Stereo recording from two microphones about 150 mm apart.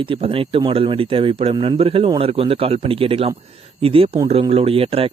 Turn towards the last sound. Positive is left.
turn(degrees=-40)  # may be behind; listen again after turning